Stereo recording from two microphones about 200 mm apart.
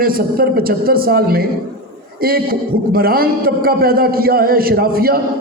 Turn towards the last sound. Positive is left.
turn(degrees=-50)  # may be behind; listen again after turning